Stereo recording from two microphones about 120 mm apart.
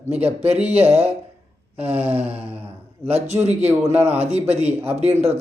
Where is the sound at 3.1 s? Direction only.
65° right (ahead or behind).